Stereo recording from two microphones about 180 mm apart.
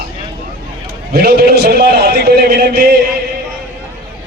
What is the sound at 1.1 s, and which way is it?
A man's voice, 60° right (ahead or behind).